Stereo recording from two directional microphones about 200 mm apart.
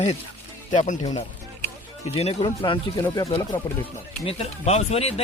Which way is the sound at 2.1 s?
30° left (ahead or behind).